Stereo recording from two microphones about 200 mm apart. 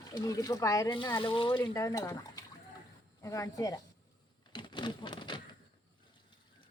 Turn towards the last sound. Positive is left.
turn(degrees=25)  # may be behind; listen again after turning